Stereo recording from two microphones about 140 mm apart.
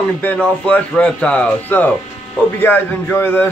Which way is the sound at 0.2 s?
10° left (ahead or behind).